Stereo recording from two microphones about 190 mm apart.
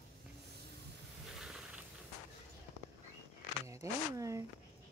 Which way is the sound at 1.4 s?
5° right (ahead or behind).